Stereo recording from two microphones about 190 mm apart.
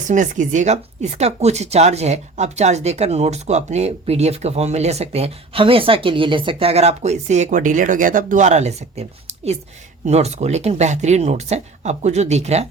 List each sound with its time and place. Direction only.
0.1 s speech: 40° right (ahead or behind)